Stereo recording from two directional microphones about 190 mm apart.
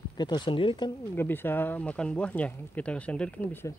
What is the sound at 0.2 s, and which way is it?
Speech, 25° left (ahead or behind).